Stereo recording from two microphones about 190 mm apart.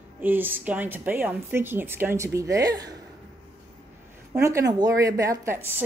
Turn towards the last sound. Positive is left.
turn(degrees=-15)  # may be behind; listen again after turning